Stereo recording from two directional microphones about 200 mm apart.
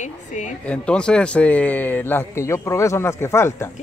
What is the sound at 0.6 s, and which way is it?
A man's voice, 5° left (ahead or behind).